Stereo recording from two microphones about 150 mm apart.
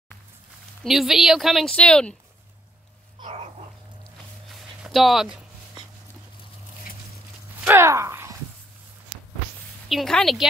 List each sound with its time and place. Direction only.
0.8 s speech: centre (ahead or behind)
4.6 s a sound: centre (ahead or behind)
7.6 s speech: 15° right (ahead or behind)
9.8 s speech: centre (ahead or behind)